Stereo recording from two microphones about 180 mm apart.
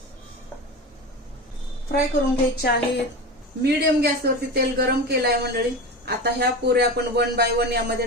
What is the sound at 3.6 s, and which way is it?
Speech, 65° right (ahead or behind).